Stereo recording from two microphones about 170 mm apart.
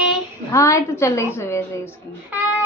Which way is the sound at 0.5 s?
15° left (ahead or behind).